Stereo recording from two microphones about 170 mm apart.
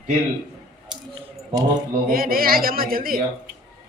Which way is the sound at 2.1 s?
60° right (ahead or behind).